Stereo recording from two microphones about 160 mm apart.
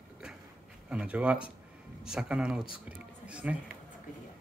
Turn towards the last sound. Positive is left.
turn(degrees=-5)  # may be behind; listen again after turning